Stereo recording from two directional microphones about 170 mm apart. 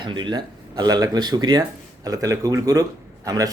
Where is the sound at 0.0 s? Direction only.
25° right (ahead or behind).